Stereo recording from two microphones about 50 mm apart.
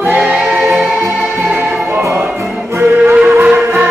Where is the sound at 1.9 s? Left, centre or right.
Right.